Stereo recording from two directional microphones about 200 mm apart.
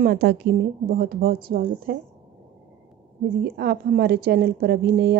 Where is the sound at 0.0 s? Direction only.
50° right (ahead or behind).